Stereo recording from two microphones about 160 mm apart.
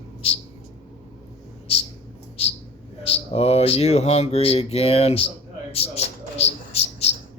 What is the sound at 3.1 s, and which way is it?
A man's voice, 40° left (ahead or behind).